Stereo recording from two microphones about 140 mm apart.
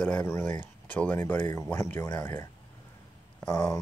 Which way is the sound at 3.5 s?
25° left (ahead or behind).